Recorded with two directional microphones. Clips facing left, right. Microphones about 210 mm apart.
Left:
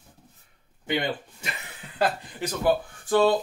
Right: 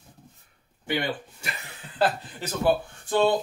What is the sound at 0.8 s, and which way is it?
Speech, 20° left (ahead or behind).